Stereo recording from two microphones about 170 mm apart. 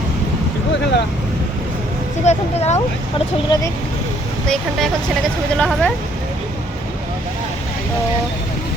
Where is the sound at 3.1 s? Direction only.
30° left (ahead or behind).